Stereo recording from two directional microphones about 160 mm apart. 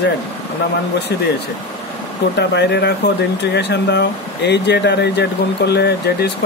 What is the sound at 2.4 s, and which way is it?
Speech, 90° left.